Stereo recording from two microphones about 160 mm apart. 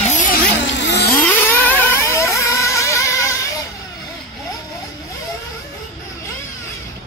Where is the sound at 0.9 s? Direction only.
85° left.